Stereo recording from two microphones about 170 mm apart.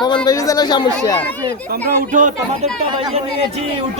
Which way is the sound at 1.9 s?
50° right (ahead or behind).